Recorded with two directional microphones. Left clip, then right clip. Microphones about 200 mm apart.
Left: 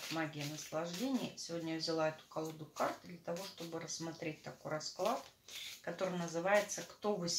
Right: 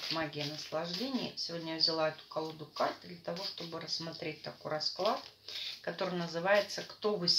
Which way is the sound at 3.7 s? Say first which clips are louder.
Right 1 dB; 20° right (ahead or behind).